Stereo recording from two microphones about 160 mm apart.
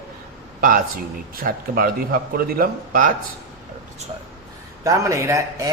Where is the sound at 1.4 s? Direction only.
65° right (ahead or behind).